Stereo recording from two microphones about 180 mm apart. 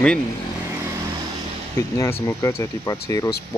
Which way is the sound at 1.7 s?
20° left (ahead or behind).